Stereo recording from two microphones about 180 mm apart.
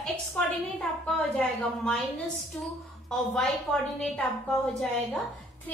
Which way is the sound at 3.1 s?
5° left (ahead or behind).